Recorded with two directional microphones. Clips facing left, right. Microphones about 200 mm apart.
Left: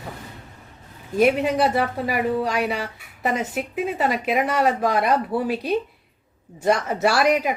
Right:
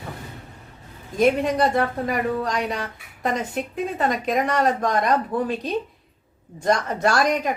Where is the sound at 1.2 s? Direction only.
5° left (ahead or behind).